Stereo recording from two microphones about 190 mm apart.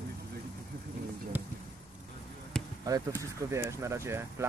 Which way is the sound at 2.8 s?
20° right (ahead or behind).